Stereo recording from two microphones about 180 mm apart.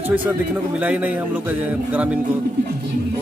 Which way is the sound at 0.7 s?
10° right (ahead or behind).